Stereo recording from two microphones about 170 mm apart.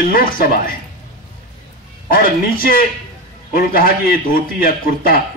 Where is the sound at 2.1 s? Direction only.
60° left (ahead or behind).